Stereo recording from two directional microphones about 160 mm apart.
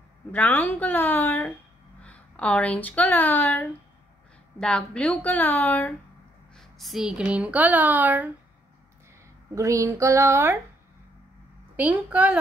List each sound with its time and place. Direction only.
0.3 s a woman's voice: 10° left (ahead or behind); by 8.3 s 10° right (ahead or behind)
9.6 s speech: 20° right (ahead or behind)
11.7 s a woman's voice: 10° right (ahead or behind)